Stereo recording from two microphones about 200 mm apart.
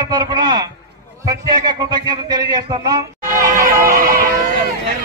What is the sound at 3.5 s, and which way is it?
Music, 40° right (ahead or behind).